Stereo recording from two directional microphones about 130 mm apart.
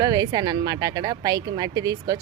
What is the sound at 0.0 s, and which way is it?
A woman's voice, 30° right (ahead or behind).